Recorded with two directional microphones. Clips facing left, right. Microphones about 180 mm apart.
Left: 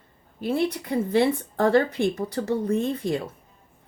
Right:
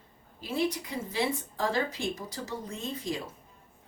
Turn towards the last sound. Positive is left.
turn(degrees=60)  # may be behind; listen again after turning